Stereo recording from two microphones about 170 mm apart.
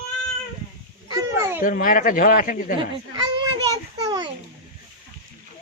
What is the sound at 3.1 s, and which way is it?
Children playing, 25° right (ahead or behind).